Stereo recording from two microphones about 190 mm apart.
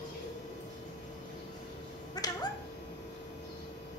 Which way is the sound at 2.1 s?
20° left (ahead or behind).